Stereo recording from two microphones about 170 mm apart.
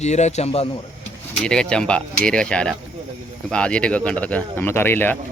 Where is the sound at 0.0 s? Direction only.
40° left (ahead or behind).